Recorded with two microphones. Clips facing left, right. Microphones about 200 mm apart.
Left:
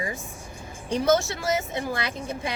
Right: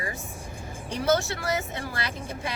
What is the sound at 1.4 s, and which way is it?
Speech, 20° left (ahead or behind).